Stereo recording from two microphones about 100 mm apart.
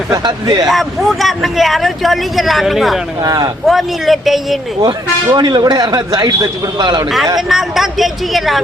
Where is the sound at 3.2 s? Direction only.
40° right (ahead or behind).